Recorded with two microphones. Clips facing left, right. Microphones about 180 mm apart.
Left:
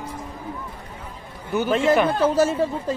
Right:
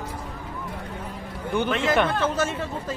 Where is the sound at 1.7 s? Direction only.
30° left (ahead or behind).